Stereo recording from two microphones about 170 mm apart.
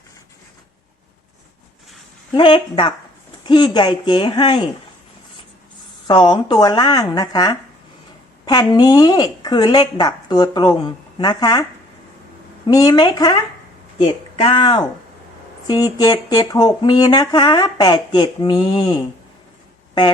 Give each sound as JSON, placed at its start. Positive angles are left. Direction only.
{"t": 2.3, "sound": "speech", "side_deg": 30}
{"t": 6.1, "sound": "speech", "side_deg": 30}
{"t": 12.6, "sound": "speech", "side_deg": 20}